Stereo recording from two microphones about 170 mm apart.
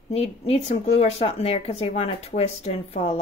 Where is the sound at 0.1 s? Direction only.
35° left (ahead or behind).